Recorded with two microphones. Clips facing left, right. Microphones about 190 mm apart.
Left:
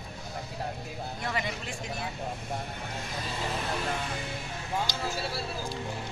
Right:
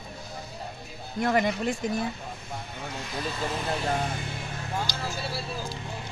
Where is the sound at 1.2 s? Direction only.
50° right (ahead or behind).